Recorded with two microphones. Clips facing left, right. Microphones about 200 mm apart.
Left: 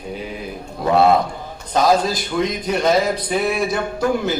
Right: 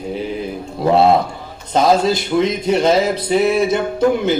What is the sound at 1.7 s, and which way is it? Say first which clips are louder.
Speech: right 3 dB; 25° right (ahead or behind).